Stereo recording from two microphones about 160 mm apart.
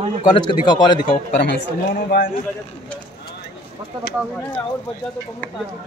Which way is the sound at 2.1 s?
90° left.